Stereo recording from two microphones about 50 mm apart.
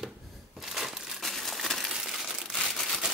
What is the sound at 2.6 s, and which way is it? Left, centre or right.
Crumpling, centre.